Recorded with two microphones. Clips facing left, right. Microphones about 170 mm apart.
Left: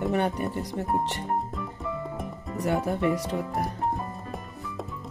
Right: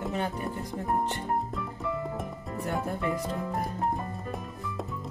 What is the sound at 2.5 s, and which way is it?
Speech, 80° left.